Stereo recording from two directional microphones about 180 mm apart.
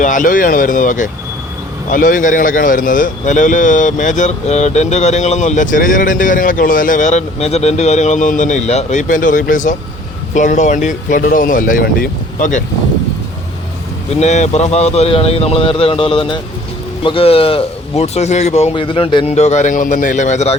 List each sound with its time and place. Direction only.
0.0 s a man's voice: 45° left (ahead or behind)
14.1 s a man's voice: 40° left (ahead or behind)